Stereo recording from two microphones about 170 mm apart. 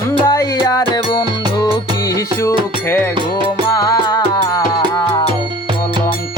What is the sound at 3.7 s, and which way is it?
Music, 20° left (ahead or behind).